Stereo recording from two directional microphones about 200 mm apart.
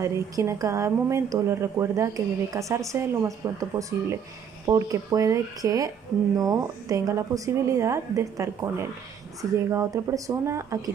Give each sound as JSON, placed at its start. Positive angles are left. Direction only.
{"t": 0.0, "sound": "speech", "side_deg": -15}